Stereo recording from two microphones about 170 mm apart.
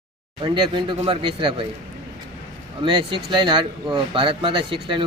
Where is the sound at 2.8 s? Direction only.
30° right (ahead or behind).